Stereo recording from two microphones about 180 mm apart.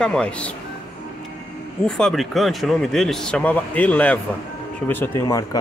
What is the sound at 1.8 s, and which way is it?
Speech, 5° left (ahead or behind).